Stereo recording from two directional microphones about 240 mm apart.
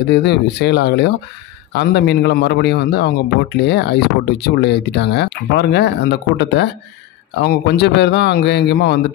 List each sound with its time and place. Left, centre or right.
0.1 s speech: left